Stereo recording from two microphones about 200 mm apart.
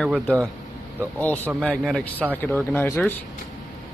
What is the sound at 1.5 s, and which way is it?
Speech, 5° left (ahead or behind).